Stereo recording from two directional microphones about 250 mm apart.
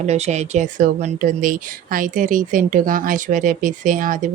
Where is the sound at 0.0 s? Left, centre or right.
Right.